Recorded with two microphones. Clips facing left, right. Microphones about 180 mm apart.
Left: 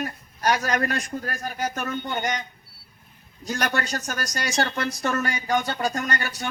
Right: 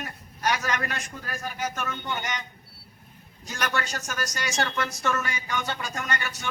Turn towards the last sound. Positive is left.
turn(degrees=35)  # may be behind; listen again after turning